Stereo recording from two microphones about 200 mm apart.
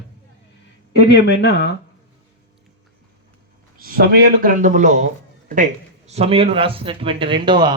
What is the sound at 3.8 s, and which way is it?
A man's voice, 50° right (ahead or behind).